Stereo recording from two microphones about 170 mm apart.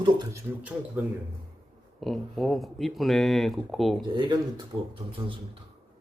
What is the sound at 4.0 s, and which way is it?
Speech, 30° right (ahead or behind).